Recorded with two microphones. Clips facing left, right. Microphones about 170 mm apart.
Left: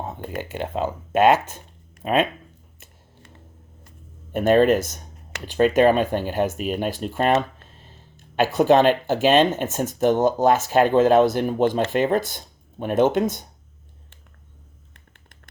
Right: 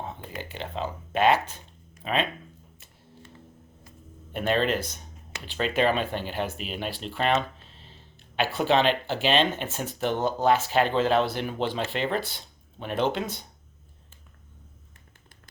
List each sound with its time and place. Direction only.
0.0 s speech: 50° left (ahead or behind)
4.3 s speech: 45° left (ahead or behind)
8.4 s speech: 45° left (ahead or behind)